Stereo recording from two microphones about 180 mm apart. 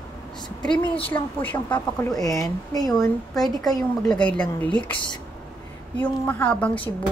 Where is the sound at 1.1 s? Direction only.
10° left (ahead or behind).